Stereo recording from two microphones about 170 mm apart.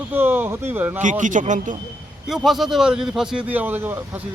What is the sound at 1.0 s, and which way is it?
Speech, 45° right (ahead or behind).